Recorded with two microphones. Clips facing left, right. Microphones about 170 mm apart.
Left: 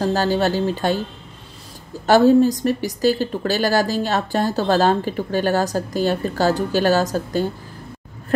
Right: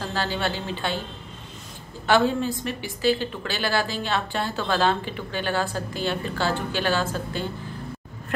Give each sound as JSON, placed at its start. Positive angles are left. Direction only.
{"t": 0.0, "sound": "speech", "side_deg": 40}
{"t": 2.0, "sound": "speech", "side_deg": 40}